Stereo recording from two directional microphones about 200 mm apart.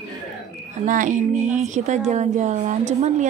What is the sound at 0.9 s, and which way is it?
A woman's voice, 40° right (ahead or behind).